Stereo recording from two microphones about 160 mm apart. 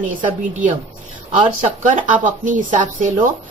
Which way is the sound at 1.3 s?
55° right (ahead or behind).